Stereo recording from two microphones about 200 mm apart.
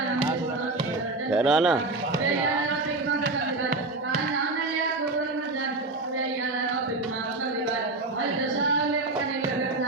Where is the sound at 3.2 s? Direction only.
40° right (ahead or behind).